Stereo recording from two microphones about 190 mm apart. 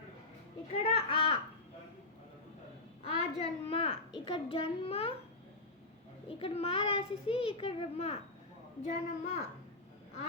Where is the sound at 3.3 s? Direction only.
30° left (ahead or behind).